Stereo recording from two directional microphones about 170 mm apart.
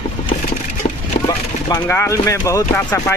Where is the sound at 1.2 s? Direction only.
15° left (ahead or behind).